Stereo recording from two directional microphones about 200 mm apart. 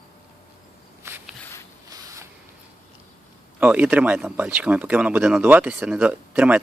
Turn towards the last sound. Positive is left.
turn(degrees=-10)  # may be behind; listen again after turning